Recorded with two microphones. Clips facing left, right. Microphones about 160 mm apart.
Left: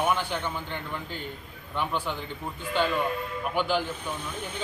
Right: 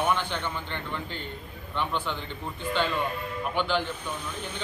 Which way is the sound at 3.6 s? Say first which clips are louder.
Left 1 dB; 10° left (ahead or behind).